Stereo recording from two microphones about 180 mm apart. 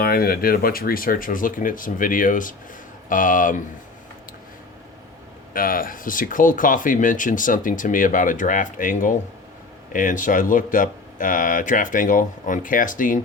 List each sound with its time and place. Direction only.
0.0 s speech: 55° left (ahead or behind)
5.5 s speech: 50° left (ahead or behind)